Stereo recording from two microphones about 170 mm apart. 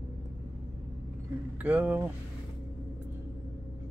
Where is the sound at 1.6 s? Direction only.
10° right (ahead or behind).